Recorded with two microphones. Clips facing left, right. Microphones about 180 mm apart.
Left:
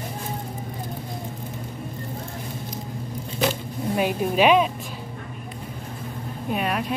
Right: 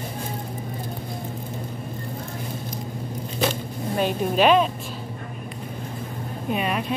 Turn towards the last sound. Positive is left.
turn(degrees=0)  # may be behind; listen again after turning